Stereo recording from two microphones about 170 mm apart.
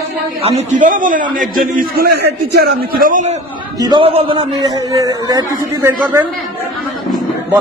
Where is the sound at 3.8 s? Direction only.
25° right (ahead or behind).